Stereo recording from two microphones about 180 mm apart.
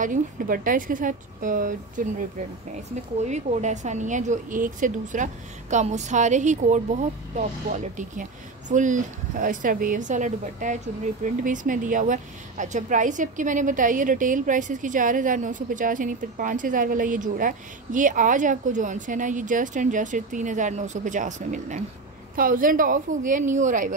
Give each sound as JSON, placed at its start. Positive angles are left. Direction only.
{"t": 0.0, "sound": "a woman's voice", "side_deg": -45}
{"t": 3.2, "sound": "a woman's voice", "side_deg": -40}